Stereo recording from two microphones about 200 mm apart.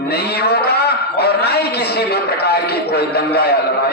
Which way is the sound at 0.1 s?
55° left (ahead or behind).